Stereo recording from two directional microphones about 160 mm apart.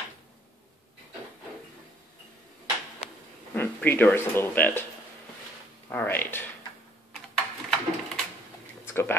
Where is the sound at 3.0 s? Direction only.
45° left (ahead or behind).